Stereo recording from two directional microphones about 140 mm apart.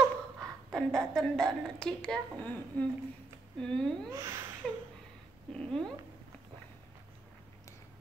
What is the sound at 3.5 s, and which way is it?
Speech, 5° left (ahead or behind).